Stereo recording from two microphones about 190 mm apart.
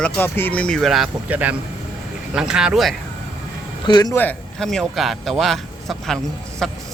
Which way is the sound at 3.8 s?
20° left (ahead or behind).